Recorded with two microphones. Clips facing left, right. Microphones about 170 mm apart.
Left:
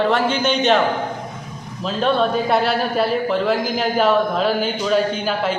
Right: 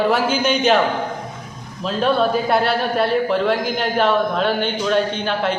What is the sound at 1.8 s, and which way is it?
Speech, centre (ahead or behind).